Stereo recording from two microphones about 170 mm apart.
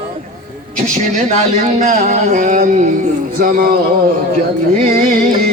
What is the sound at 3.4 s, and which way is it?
Music, 55° right (ahead or behind).